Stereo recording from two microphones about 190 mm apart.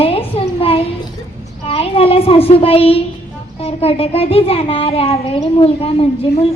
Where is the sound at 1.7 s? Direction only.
30° left (ahead or behind).